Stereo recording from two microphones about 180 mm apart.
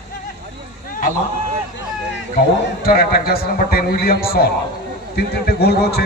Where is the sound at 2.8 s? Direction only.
55° left (ahead or behind).